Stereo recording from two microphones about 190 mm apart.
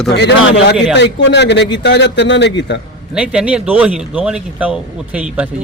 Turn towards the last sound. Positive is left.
turn(degrees=-5)  # may be behind; listen again after turning